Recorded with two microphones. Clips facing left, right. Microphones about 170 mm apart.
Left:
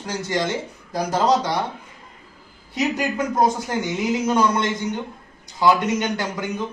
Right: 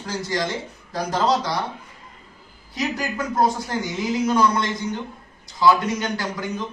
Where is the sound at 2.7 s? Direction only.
20° left (ahead or behind).